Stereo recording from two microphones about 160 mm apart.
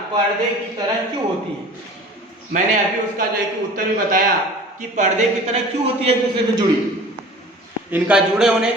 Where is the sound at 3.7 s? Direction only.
60° right (ahead or behind).